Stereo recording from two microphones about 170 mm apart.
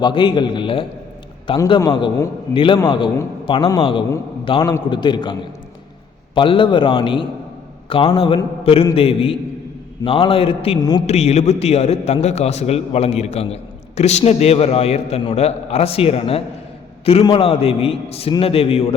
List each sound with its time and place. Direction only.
0.0 s a man's voice: 25° left (ahead or behind)
8.6 s mantra: 35° left (ahead or behind)
9.0 s a man's voice: 35° left (ahead or behind)
11.0 s a man's voice: 40° left (ahead or behind)